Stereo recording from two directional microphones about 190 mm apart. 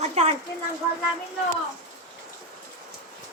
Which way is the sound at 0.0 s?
35° right (ahead or behind).